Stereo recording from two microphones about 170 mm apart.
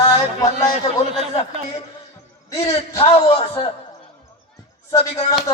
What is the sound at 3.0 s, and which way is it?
Speech, 35° left (ahead or behind).